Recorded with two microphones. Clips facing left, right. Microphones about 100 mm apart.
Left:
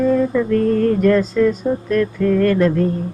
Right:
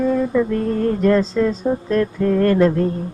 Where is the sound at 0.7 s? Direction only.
25° right (ahead or behind).